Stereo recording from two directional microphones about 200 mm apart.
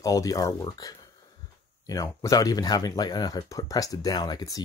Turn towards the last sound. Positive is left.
turn(degrees=20)  # may be behind; listen again after turning